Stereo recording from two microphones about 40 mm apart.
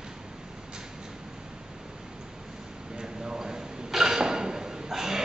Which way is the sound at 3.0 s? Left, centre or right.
Centre.